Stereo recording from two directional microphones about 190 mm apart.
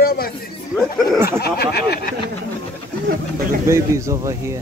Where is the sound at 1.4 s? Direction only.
55° left (ahead or behind).